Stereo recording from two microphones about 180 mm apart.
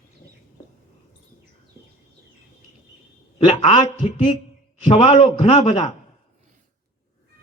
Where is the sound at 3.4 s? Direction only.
35° left (ahead or behind).